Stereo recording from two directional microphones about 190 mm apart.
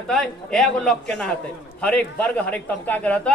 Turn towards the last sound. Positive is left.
turn(degrees=5)  # may be behind; listen again after turning